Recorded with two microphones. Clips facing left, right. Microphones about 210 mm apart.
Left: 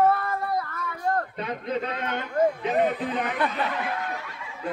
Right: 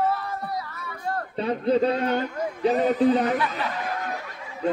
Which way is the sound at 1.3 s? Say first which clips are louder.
Right 7 dB; 35° right (ahead or behind).